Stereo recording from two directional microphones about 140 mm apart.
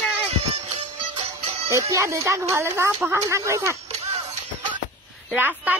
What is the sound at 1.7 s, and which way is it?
Speech, 20° right (ahead or behind).